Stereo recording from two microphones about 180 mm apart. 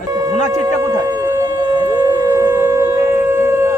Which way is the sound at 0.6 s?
20° right (ahead or behind).